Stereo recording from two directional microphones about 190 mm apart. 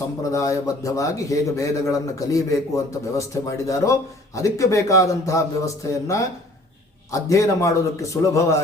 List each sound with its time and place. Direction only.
0.3 s a man's voice: 15° left (ahead or behind)